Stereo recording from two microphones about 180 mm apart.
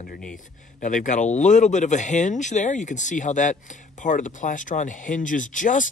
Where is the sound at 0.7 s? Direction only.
45° left (ahead or behind).